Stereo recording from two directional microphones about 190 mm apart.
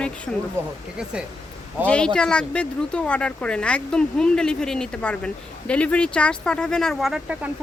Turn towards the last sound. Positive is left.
turn(degrees=-5)  # may be behind; listen again after turning